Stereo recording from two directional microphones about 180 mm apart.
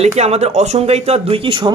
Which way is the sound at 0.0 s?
35° right (ahead or behind).